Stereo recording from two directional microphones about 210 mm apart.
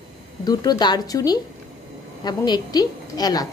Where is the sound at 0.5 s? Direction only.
20° left (ahead or behind).